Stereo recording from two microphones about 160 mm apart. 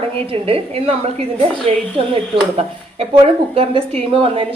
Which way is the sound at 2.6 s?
40° right (ahead or behind).